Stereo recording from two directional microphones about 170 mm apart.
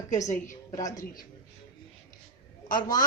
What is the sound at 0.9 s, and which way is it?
Speech, 55° left (ahead or behind).